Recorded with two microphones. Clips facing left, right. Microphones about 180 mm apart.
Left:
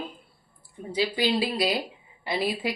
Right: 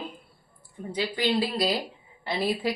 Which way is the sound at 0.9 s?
10° left (ahead or behind).